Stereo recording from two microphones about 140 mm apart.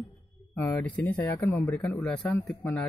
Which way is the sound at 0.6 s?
15° left (ahead or behind).